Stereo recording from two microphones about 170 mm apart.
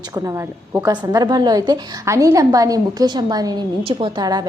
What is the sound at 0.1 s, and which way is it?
A woman's voice, 20° right (ahead or behind).